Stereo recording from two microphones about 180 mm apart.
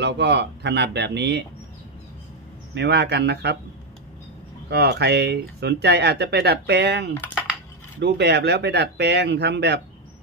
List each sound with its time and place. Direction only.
0.0 s speech: 70° right (ahead or behind)
2.7 s speech: 70° right (ahead or behind)
4.6 s speech: 65° right (ahead or behind)